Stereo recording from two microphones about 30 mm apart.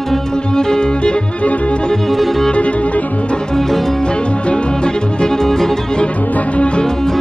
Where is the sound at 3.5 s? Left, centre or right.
Centre.